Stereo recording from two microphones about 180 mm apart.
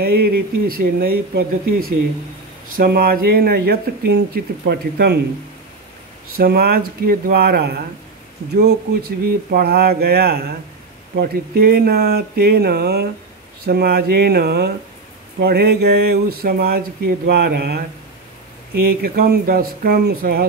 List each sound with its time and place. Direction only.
0.0 s speech: 55° right (ahead or behind)
6.3 s speech: 55° right (ahead or behind)
19.0 s speech: 55° right (ahead or behind)